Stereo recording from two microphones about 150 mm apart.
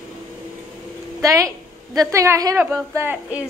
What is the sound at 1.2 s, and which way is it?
A woman's voice, 20° right (ahead or behind).